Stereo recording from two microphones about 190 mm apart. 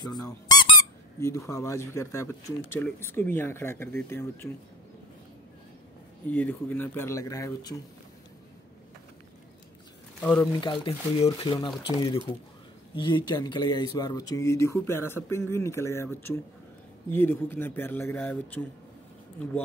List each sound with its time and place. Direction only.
0.2 s squeak: 20° left (ahead or behind)
1.2 s speech: 15° left (ahead or behind)
6.2 s speech: 10° left (ahead or behind)
10.2 s speech: 10° left (ahead or behind)
10.6 s speech: 25° left (ahead or behind); by 18.7 s 10° left (ahead or behind)